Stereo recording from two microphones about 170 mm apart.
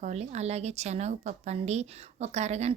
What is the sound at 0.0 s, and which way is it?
Speech, 40° right (ahead or behind).